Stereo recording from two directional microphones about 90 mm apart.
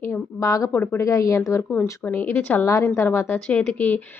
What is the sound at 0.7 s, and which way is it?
Speech, 25° left (ahead or behind).